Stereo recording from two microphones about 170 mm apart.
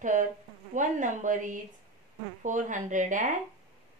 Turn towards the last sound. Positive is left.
turn(degrees=-50)  # may be behind; listen again after turning